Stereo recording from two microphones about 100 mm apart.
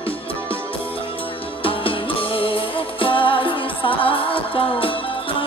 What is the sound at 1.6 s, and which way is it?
Music, 65° left (ahead or behind).